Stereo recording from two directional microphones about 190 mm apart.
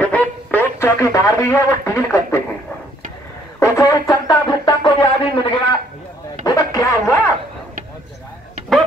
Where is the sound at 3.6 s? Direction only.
20° left (ahead or behind).